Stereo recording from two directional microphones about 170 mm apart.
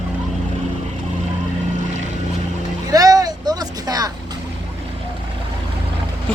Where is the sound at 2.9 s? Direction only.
20° right (ahead or behind).